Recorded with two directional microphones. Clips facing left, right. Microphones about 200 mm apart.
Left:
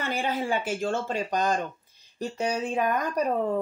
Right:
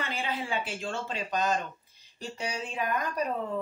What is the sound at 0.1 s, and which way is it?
Speech, 45° left (ahead or behind).